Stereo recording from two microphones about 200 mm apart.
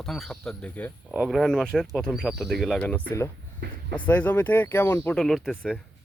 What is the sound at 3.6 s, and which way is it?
Speech, 55° right (ahead or behind).